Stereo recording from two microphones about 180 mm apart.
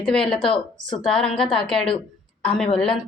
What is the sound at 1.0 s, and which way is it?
Speech, 5° left (ahead or behind).